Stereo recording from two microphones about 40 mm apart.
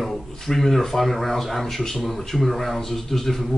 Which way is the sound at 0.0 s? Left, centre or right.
Centre.